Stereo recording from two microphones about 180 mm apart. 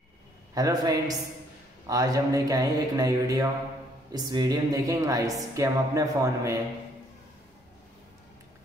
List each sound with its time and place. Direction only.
0.6 s a woman's voice: 20° right (ahead or behind)